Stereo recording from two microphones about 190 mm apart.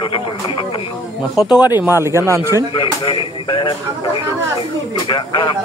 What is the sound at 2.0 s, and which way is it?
Speech, 15° right (ahead or behind).